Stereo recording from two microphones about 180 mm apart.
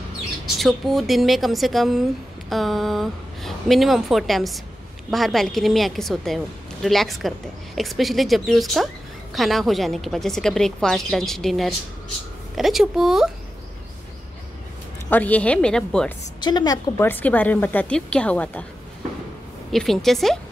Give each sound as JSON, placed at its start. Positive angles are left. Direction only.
{"t": 0.6, "sound": "a woman's voice", "side_deg": 0}
{"t": 15.0, "sound": "a woman's voice", "side_deg": 10}
{"t": 16.3, "sound": "a woman's voice", "side_deg": 25}
{"t": 17.1, "sound": "a woman's voice", "side_deg": 10}
{"t": 19.7, "sound": "a woman's voice", "side_deg": 0}